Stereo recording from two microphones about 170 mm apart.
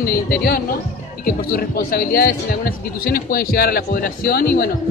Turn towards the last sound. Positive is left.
turn(degrees=65)  # may be behind; listen again after turning